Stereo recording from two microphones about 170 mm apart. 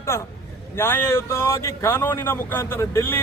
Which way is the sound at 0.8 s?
15° left (ahead or behind).